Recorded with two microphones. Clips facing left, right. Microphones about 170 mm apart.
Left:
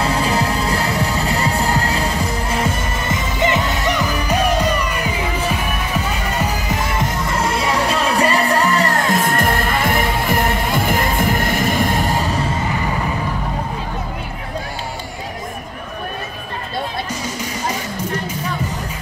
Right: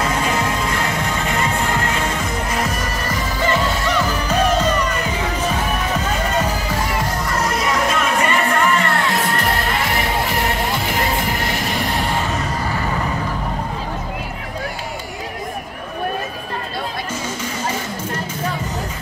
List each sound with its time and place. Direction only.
0.0 s music: 35° left (ahead or behind); by 6.8 s 10° left (ahead or behind)
7.1 s music: 25° left (ahead or behind)